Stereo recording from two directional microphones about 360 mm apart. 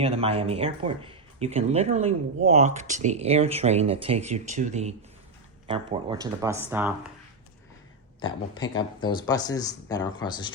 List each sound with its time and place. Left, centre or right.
0.0 s speech: centre
8.2 s speech: centre